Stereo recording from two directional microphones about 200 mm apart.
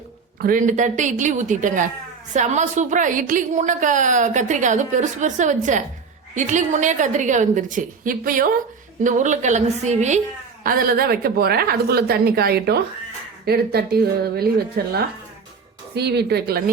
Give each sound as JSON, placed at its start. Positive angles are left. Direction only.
{"t": 0.4, "sound": "a woman's voice", "side_deg": -40}
{"t": 10.6, "sound": "a woman's voice", "side_deg": -45}
{"t": 16.0, "sound": "a woman's voice", "side_deg": -55}